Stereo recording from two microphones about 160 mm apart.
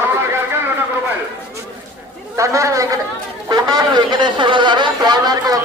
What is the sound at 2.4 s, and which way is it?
Speech, 20° right (ahead or behind).